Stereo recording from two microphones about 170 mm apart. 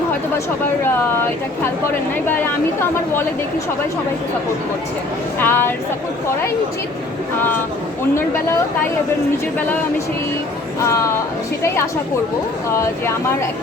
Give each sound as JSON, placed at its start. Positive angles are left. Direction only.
{"t": 5.4, "sound": "speech", "side_deg": 15}
{"t": 10.8, "sound": "speech", "side_deg": 20}
{"t": 12.7, "sound": "speech", "side_deg": 15}